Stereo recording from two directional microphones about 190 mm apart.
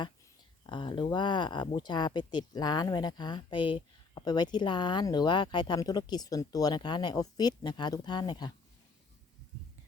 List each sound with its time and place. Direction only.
0.7 s speech: 25° left (ahead or behind)